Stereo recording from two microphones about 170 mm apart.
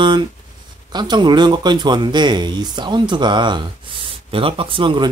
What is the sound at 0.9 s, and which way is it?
Speech, 25° right (ahead or behind).